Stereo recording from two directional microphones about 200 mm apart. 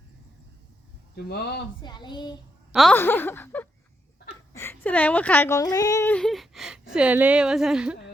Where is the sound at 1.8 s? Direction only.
20° left (ahead or behind).